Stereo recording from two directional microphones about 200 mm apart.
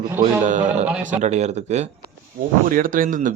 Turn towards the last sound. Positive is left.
turn(degrees=-40)  # may be behind; listen again after turning